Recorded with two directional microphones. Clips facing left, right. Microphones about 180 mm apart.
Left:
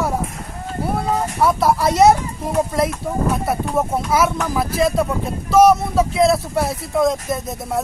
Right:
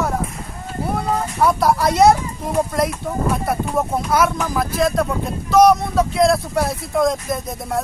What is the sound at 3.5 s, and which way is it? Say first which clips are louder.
Speech: left 1 dB; 5° left (ahead or behind).